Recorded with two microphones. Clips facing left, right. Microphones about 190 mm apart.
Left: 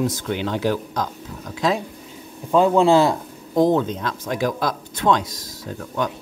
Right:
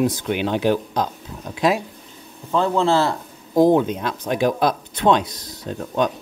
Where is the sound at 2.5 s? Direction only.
15° left (ahead or behind).